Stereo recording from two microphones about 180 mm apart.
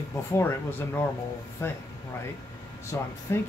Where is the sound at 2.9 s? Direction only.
15° left (ahead or behind).